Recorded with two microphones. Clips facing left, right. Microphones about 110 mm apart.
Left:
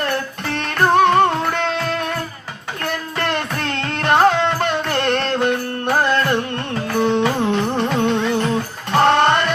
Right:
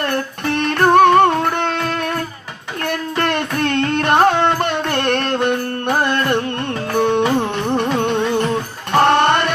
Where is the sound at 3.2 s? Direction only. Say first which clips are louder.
Right 4 dB; 55° right (ahead or behind).